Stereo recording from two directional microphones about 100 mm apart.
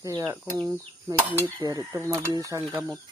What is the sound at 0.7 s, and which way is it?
Speech, 20° right (ahead or behind).